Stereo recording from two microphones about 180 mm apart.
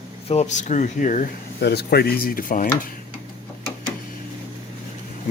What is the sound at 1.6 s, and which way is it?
Speech, 65° left (ahead or behind).